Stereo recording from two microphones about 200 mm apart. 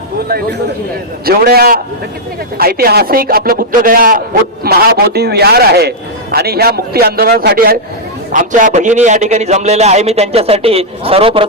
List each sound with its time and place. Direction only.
1.2 s a man's voice: 50° right (ahead or behind); by 11.4 s 25° right (ahead or behind)